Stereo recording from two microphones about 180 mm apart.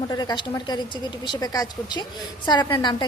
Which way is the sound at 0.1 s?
20° left (ahead or behind).